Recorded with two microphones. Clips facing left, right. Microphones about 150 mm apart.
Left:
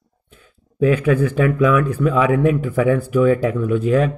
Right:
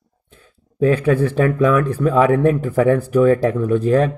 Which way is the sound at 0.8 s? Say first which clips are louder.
Even; 35° right (ahead or behind).